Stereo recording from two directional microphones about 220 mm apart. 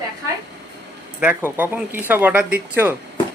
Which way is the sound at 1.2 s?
10° right (ahead or behind).